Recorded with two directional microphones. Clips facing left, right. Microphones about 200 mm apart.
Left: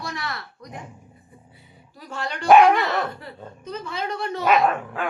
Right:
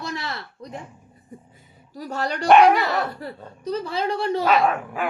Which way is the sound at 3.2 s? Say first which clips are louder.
Right 6 dB; 40° right (ahead or behind).